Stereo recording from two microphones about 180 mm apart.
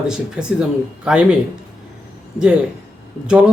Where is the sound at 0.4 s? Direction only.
5° right (ahead or behind).